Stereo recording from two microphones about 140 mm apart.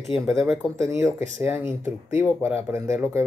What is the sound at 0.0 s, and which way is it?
Speech, centre (ahead or behind).